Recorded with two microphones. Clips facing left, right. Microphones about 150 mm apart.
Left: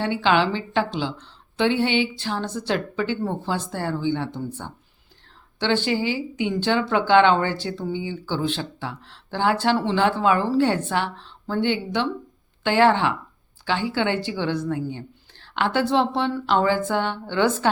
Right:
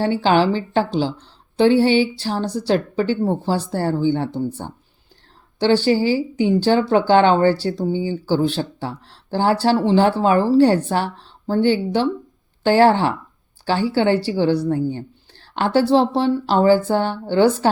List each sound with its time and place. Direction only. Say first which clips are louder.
0.0 s speech: right 4 dB; 40° right (ahead or behind)